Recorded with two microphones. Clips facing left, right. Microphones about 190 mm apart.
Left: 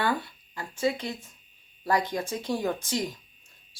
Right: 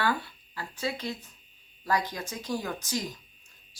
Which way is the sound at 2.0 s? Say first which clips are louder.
Left 5 dB; 25° left (ahead or behind).